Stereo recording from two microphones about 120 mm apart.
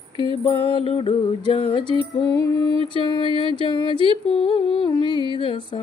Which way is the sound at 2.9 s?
45° left (ahead or behind).